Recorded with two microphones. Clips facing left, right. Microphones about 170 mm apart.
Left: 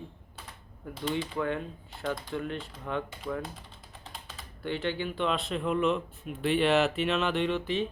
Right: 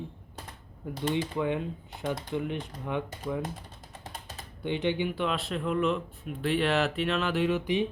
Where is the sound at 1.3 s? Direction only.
15° right (ahead or behind).